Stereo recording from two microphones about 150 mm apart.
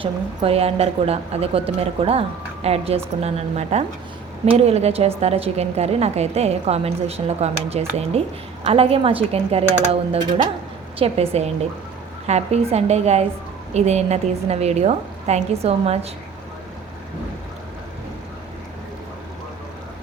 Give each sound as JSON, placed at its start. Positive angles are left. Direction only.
{"t": 0.0, "sound": "a woman's voice", "side_deg": -40}